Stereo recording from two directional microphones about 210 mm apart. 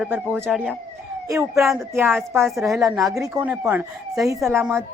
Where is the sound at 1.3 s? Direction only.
15° right (ahead or behind).